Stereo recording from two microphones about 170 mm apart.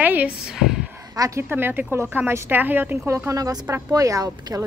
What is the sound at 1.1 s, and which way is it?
A woman's voice, 20° right (ahead or behind).